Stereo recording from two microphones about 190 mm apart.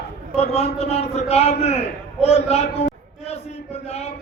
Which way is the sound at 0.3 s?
35° left (ahead or behind).